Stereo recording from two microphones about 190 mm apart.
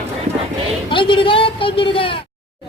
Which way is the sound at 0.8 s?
25° left (ahead or behind).